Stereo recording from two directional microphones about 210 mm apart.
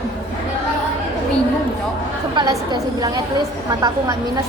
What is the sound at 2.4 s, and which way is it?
Speech, 20° right (ahead or behind).